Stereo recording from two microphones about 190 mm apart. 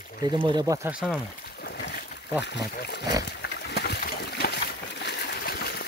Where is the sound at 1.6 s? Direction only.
60° left (ahead or behind).